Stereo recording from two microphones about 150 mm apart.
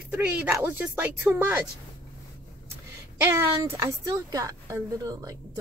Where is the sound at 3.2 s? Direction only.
15° right (ahead or behind).